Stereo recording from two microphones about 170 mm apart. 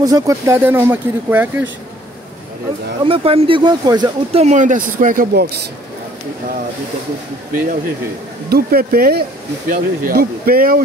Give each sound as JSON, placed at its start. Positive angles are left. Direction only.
{"t": 0.0, "sound": "speech", "side_deg": -20}
{"t": 3.0, "sound": "speech", "side_deg": -35}
{"t": 4.4, "sound": "speech", "side_deg": -45}
{"t": 8.5, "sound": "speech", "side_deg": -65}